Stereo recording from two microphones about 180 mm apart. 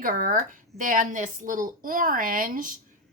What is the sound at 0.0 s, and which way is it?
A woman's voice, 50° right (ahead or behind).